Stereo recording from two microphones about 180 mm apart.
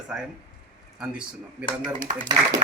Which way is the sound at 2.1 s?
40° right (ahead or behind).